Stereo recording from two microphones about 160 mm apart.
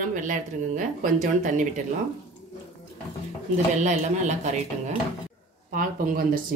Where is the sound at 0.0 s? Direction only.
55° right (ahead or behind).